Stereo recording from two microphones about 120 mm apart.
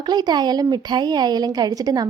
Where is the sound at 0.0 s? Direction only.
35° right (ahead or behind).